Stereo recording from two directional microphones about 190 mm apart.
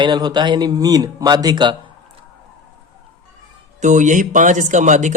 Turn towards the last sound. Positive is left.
turn(degrees=-40)  # may be behind; listen again after turning